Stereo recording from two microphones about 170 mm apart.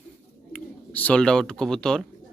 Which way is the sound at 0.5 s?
10° left (ahead or behind).